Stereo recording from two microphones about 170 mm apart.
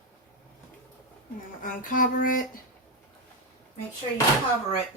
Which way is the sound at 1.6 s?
55° left (ahead or behind).